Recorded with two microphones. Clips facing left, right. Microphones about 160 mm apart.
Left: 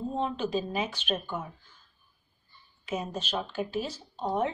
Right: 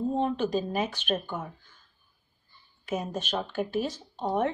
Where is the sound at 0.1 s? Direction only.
50° right (ahead or behind).